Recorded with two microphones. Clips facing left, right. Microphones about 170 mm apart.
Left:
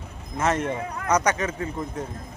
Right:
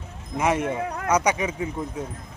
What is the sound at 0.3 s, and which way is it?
Speech, 10° right (ahead or behind).